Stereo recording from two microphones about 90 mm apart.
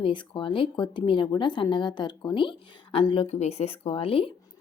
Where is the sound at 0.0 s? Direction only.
65° left (ahead or behind).